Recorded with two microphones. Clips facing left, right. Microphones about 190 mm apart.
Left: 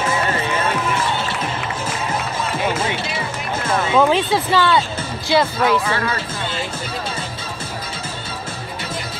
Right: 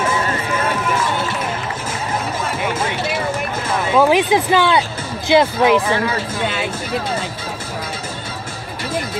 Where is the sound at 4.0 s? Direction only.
10° right (ahead or behind).